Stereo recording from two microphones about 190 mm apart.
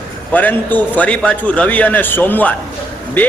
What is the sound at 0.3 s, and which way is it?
A man's voice, 10° left (ahead or behind).